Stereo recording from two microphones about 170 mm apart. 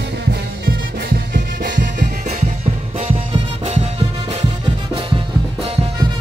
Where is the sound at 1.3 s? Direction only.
50° right (ahead or behind).